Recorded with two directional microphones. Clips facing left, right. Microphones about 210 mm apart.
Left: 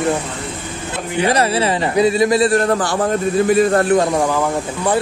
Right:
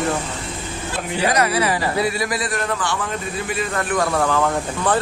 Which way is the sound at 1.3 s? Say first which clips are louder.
Left 3 dB; 30° left (ahead or behind).